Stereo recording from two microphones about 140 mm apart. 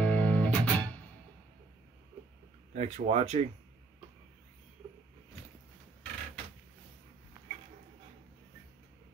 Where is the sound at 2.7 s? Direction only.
50° right (ahead or behind).